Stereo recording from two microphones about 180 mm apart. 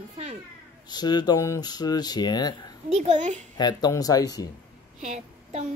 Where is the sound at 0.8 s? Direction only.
25° left (ahead or behind).